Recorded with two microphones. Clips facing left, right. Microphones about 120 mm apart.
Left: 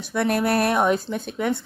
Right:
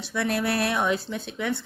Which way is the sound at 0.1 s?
45° left (ahead or behind).